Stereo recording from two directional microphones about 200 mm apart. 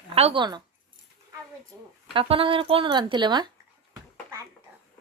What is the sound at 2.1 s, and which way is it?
Speech, 25° right (ahead or behind).